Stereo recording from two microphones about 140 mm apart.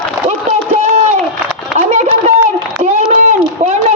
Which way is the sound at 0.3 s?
50° right (ahead or behind).